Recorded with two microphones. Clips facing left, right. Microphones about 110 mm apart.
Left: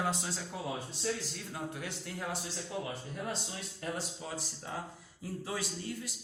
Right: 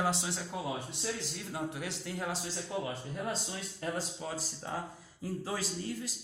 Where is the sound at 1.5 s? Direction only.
25° right (ahead or behind).